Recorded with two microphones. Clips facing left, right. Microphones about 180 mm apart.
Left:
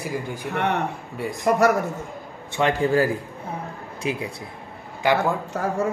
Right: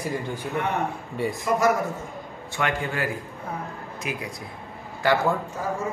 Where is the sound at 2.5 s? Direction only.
35° left (ahead or behind).